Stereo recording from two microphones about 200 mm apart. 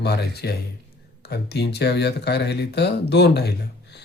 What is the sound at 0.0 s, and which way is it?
A man's voice, 55° left (ahead or behind).